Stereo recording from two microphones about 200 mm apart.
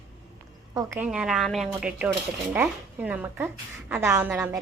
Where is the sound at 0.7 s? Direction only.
10° right (ahead or behind).